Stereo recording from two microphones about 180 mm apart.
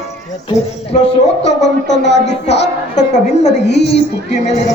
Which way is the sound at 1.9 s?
75° left (ahead or behind).